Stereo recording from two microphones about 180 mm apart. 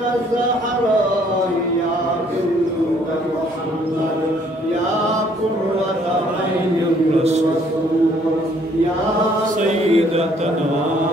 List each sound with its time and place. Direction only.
9.6 s chant: 35° right (ahead or behind)